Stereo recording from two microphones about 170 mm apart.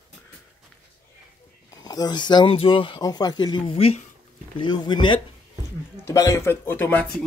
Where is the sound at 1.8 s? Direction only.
20° left (ahead or behind).